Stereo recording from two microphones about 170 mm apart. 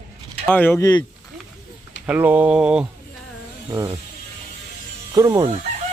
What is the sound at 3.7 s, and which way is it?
Speech, 15° right (ahead or behind).